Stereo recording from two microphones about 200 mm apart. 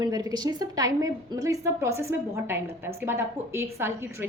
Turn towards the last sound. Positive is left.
turn(degrees=-10)  # may be behind; listen again after turning